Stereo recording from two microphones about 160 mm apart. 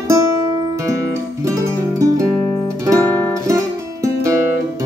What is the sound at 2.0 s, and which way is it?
Music, 20° right (ahead or behind).